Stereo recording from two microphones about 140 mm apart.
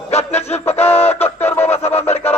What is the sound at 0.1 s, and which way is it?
Music, 50° left (ahead or behind).